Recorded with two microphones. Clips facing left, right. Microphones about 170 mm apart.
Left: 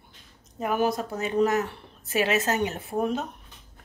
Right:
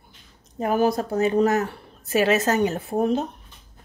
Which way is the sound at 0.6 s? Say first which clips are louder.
Right 4 dB; 35° right (ahead or behind).